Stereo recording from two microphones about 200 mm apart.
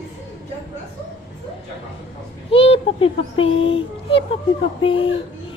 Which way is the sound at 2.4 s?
30° left (ahead or behind).